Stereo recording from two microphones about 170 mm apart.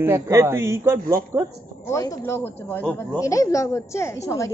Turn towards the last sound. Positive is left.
turn(degrees=15)  # may be behind; listen again after turning